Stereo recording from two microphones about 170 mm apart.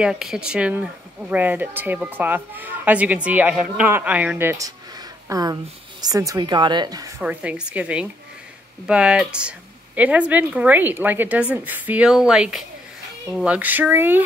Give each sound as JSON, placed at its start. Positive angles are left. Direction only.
{"t": 0.0, "sound": "a woman's voice", "side_deg": -5}
{"t": 7.2, "sound": "speech", "side_deg": -10}